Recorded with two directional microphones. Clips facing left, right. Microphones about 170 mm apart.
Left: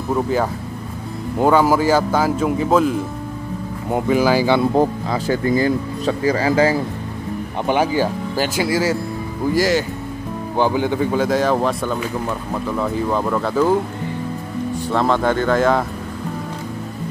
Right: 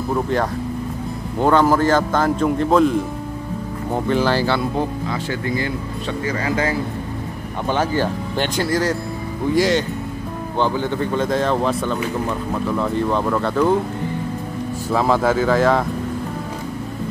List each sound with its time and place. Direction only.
0.1 s speech: 5° left (ahead or behind)
4.7 s speech: 40° left (ahead or behind)
7.6 s speech: 10° left (ahead or behind)
14.9 s speech: 5° right (ahead or behind)